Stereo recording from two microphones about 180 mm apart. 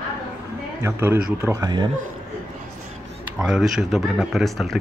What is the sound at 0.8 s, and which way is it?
Speech, 15° right (ahead or behind).